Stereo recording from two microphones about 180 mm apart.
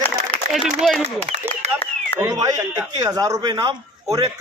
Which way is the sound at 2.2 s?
20° right (ahead or behind).